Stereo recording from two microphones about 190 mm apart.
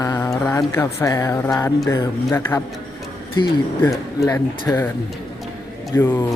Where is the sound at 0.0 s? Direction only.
15° left (ahead or behind).